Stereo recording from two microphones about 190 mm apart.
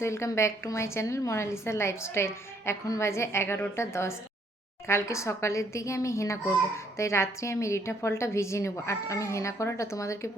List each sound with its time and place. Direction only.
0.0 s a woman's voice: 15° left (ahead or behind)